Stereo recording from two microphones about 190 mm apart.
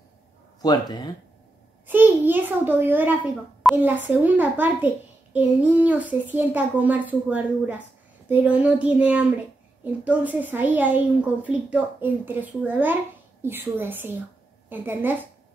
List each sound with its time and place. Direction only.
0.6 s speech: 20° left (ahead or behind)
1.9 s a child's voice: 10° right (ahead or behind)